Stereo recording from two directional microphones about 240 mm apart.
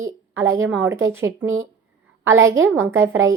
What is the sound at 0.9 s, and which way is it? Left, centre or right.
Speech, centre.